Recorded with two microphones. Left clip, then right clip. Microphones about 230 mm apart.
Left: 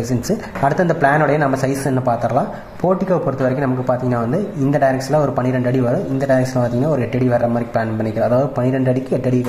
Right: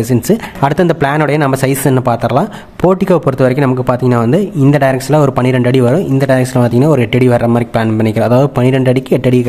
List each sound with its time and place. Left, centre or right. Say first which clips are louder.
0.7 s speech: right 3 dB; right